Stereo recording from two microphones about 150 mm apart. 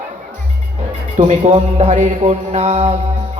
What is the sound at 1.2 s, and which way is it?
A man's voice, 55° right (ahead or behind).